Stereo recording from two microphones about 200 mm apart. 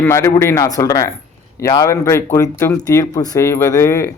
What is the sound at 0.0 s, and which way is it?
Speech, 15° left (ahead or behind).